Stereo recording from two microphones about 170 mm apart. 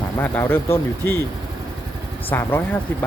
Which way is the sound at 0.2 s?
10° left (ahead or behind).